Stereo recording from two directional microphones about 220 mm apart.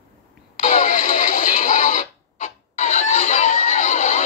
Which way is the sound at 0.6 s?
35° left (ahead or behind).